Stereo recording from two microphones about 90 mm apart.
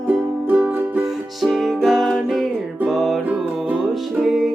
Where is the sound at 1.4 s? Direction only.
Centre (ahead or behind).